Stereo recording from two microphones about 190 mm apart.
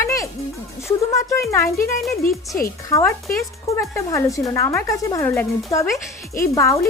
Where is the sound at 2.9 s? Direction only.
10° left (ahead or behind).